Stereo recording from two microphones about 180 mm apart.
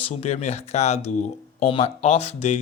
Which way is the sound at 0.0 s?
35° left (ahead or behind).